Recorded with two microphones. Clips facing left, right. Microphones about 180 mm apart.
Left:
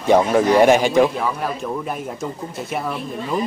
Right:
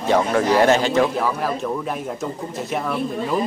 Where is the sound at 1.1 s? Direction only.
Centre (ahead or behind).